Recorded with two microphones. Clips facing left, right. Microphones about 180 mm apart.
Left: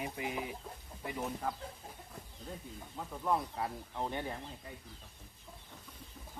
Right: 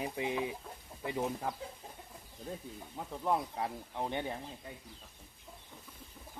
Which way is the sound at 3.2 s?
20° right (ahead or behind).